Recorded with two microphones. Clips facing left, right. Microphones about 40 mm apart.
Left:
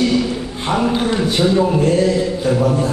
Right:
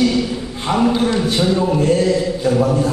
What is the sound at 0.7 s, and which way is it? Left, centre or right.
Speech, left.